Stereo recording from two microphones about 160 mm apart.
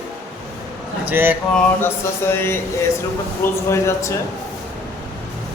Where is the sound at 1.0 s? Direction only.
10° right (ahead or behind).